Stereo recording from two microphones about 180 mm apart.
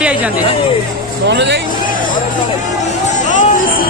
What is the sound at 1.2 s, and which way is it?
Speech, 75° right (ahead or behind).